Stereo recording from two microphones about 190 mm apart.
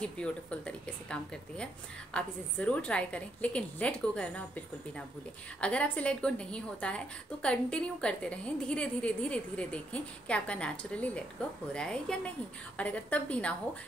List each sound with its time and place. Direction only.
0.0 s a woman's voice: 5° left (ahead or behind)
5.6 s a woman's voice: 5° left (ahead or behind)